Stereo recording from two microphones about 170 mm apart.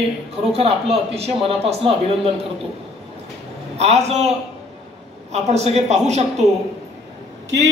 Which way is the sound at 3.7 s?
40° right (ahead or behind).